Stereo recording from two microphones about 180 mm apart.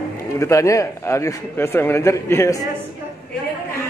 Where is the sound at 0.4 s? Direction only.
15° left (ahead or behind).